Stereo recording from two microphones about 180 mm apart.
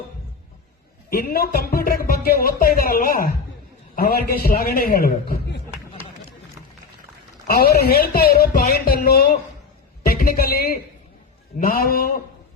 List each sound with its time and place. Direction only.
1.1 s speech: 55° left (ahead or behind)
7.4 s speech: 55° left (ahead or behind)